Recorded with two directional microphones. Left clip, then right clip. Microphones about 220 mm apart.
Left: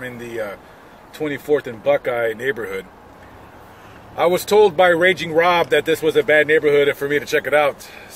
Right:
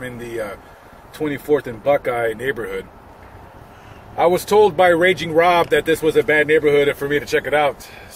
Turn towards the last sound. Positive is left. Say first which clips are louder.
# left 1 dB
turn(degrees=15)  # may be behind; listen again after turning